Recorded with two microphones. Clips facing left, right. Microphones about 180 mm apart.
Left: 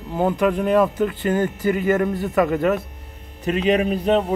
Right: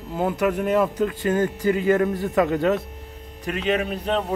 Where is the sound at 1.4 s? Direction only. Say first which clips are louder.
Right 1 dB; 20° left (ahead or behind).